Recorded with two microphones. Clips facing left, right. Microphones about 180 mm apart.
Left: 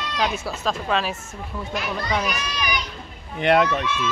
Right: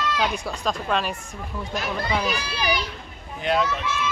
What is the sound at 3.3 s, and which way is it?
Speech, 65° left (ahead or behind).